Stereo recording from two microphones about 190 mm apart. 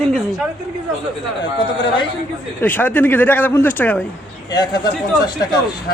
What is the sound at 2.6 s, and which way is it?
Speech, 10° left (ahead or behind).